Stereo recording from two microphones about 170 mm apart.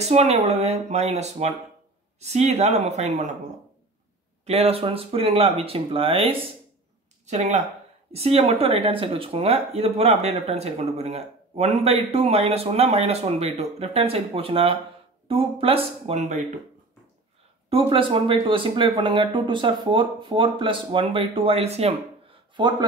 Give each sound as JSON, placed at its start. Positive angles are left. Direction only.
{"t": 0.0, "sound": "speech", "side_deg": -40}
{"t": 4.5, "sound": "speech", "side_deg": -35}
{"t": 17.6, "sound": "speech", "side_deg": -30}
{"t": 22.6, "sound": "speech", "side_deg": -25}